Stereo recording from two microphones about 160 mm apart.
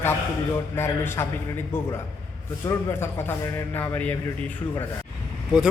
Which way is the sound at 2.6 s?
15° left (ahead or behind).